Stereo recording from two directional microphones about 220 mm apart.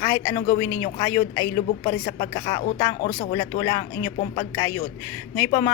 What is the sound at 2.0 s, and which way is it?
A woman's voice, 30° left (ahead or behind).